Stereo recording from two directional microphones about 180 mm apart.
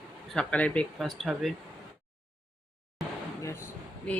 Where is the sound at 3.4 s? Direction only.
15° left (ahead or behind).